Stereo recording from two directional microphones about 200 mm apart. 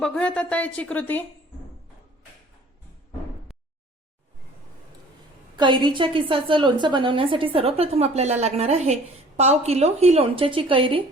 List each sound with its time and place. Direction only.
0.0 s speech: 5° left (ahead or behind)
5.5 s a woman's voice: 20° right (ahead or behind)